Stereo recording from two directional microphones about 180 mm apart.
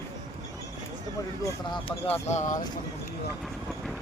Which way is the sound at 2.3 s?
40° left (ahead or behind).